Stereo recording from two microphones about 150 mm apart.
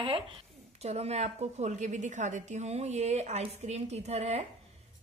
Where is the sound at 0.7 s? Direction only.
45° right (ahead or behind).